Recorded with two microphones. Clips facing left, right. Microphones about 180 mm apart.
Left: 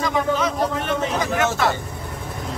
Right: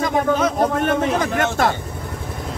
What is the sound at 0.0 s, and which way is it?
A man's voice, 50° right (ahead or behind).